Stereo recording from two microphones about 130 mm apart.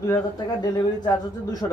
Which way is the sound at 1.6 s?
30° left (ahead or behind).